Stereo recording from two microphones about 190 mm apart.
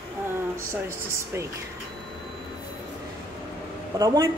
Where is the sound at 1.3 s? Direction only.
15° right (ahead or behind).